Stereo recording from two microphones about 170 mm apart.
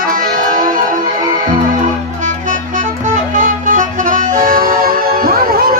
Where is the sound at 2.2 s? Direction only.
50° right (ahead or behind).